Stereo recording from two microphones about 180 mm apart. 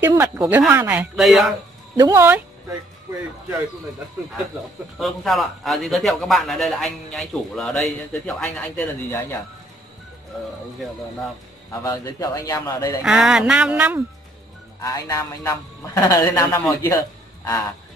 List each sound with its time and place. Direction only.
0.0 s speech: 15° right (ahead or behind)
0.4 s a man's voice: 5° right (ahead or behind)
2.0 s speech: 15° right (ahead or behind)
4.9 s a man's voice: centre (ahead or behind)
11.8 s speech: 20° left (ahead or behind)
13.0 s a man's voice: 5° right (ahead or behind)
14.8 s a man's voice: 20° left (ahead or behind)